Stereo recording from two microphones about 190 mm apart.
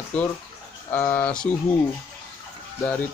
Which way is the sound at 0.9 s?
10° left (ahead or behind).